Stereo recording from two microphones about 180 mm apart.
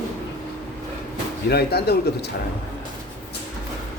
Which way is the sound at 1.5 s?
60° left (ahead or behind).